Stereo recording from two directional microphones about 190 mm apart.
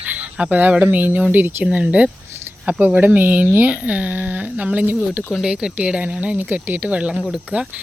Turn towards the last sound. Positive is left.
turn(degrees=-5)  # may be behind; listen again after turning